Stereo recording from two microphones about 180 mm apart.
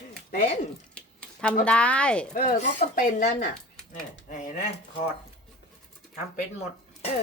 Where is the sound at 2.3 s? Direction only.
50° left (ahead or behind).